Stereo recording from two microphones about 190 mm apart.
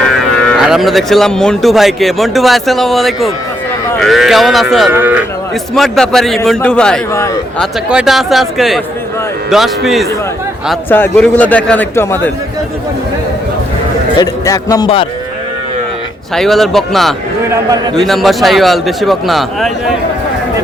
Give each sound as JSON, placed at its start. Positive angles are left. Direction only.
{"t": 0.6, "sound": "speech", "side_deg": 0}
{"t": 5.7, "sound": "speech", "side_deg": 0}
{"t": 10.8, "sound": "a man's voice", "side_deg": 10}
{"t": 14.2, "sound": "a man's voice", "side_deg": 20}
{"t": 16.3, "sound": "speech", "side_deg": 0}
{"t": 17.5, "sound": "a man's voice", "side_deg": -20}
{"t": 17.9, "sound": "speech", "side_deg": 0}